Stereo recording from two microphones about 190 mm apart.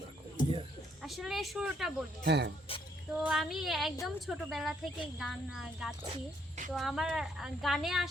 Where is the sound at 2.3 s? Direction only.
65° right (ahead or behind).